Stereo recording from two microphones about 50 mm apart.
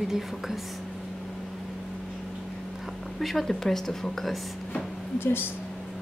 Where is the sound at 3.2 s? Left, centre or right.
Centre.